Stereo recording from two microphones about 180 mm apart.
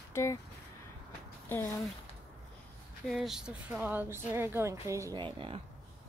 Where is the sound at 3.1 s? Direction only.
Centre (ahead or behind); by 5.2 s 15° right (ahead or behind).